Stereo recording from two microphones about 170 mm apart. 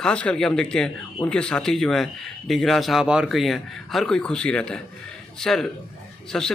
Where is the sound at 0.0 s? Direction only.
5° left (ahead or behind).